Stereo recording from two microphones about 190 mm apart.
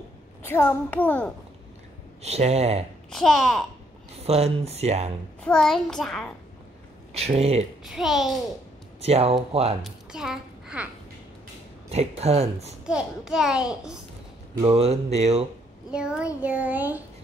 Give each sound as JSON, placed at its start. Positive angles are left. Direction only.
{"t": 0.4, "sound": "a child's voice", "side_deg": 15}
{"t": 2.2, "sound": "speech", "side_deg": -35}
{"t": 3.1, "sound": "a child's voice", "side_deg": 0}
{"t": 4.2, "sound": "speech", "side_deg": -35}
{"t": 5.4, "sound": "a child's voice", "side_deg": 5}
{"t": 7.2, "sound": "speech", "side_deg": -35}
{"t": 7.8, "sound": "a child's voice", "side_deg": 0}
{"t": 9.0, "sound": "speech", "side_deg": -35}
{"t": 9.8, "sound": "a child's voice", "side_deg": 0}
{"t": 11.9, "sound": "speech", "side_deg": -35}
{"t": 12.8, "sound": "a child's voice", "side_deg": -5}
{"t": 14.7, "sound": "speech", "side_deg": -35}
{"t": 15.9, "sound": "a child's voice", "side_deg": -5}